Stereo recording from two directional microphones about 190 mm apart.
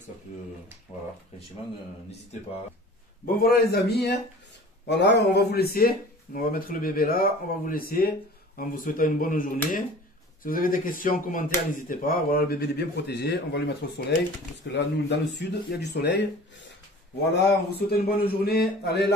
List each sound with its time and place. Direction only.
3.3 s a man's voice: 50° left (ahead or behind)
17.3 s a man's voice: 65° left (ahead or behind)